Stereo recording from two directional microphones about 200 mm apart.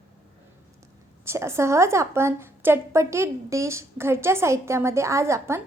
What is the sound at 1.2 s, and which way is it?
A woman's voice, 15° right (ahead or behind).